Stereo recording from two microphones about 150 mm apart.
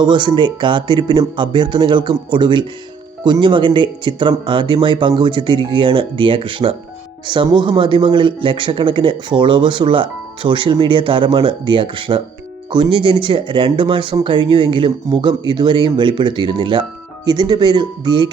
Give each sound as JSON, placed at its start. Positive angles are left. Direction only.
{"t": 0.0, "sound": "speech", "side_deg": -30}